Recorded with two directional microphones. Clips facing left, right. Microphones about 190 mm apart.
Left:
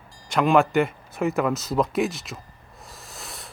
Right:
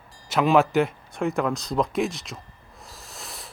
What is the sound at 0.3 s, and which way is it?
Speech, centre (ahead or behind).